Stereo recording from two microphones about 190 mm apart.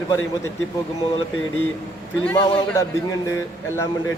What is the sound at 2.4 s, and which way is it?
Speech, 25° left (ahead or behind).